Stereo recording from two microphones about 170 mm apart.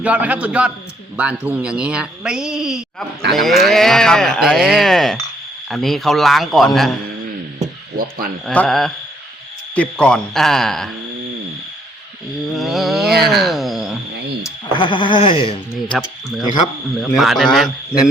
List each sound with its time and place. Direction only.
0.0 s a man's voice: 10° right (ahead or behind)
8.4 s speech: 5° left (ahead or behind)
12.5 s speech: centre (ahead or behind)
14.4 s speech: 25° left (ahead or behind)
15.9 s speech: centre (ahead or behind)